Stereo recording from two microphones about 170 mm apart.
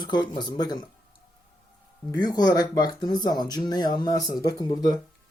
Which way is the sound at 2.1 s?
25° left (ahead or behind).